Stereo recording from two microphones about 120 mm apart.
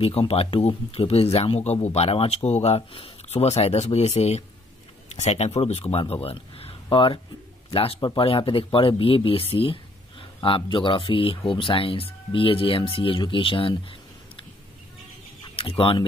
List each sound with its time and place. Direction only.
0.0 s speech: 55° left (ahead or behind)
15.4 s speech: 45° left (ahead or behind)